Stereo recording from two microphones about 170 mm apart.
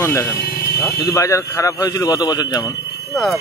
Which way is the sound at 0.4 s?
65° left (ahead or behind).